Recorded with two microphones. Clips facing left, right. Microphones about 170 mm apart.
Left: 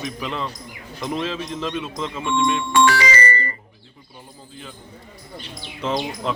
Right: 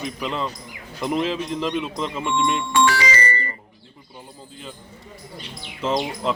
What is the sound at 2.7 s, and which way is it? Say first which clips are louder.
Music: left 2 dB; 65° left (ahead or behind).